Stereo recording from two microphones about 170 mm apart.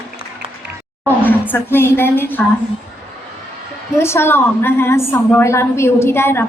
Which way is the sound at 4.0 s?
15° left (ahead or behind).